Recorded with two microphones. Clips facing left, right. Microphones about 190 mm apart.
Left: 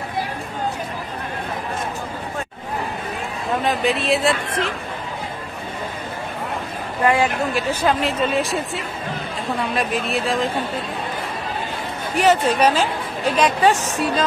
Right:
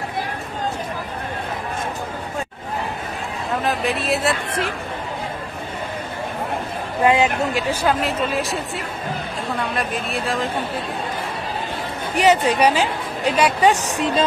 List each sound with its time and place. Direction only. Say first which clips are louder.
3.6 s speech: left 2 dB; centre (ahead or behind)
7.1 s speech: right 1 dB; 20° right (ahead or behind)
8.0 s speech: left 2 dB; centre (ahead or behind)
12.2 s speech: even; 15° right (ahead or behind)